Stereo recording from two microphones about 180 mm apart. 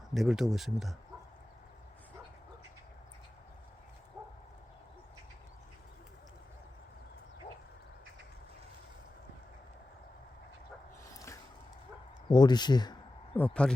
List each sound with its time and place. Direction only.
0.1 s speech: centre (ahead or behind)
11.0 s a sound: 15° left (ahead or behind)
12.3 s speech: 25° left (ahead or behind)
13.3 s speech: 10° left (ahead or behind)